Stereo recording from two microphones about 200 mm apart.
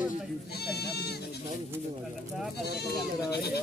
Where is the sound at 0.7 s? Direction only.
55° left (ahead or behind).